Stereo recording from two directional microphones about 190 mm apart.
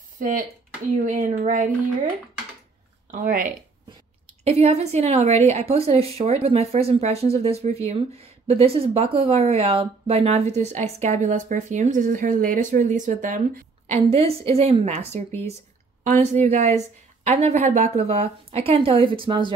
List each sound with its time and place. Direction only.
0.9 s speech: 40° right (ahead or behind)
3.1 s speech: 45° right (ahead or behind)
4.5 s speech: 35° right (ahead or behind)
13.8 s speech: 30° right (ahead or behind)